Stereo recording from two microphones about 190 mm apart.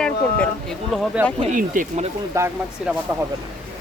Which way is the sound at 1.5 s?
45° right (ahead or behind).